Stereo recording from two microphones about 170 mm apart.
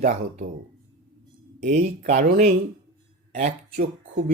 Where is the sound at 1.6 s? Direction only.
50° right (ahead or behind).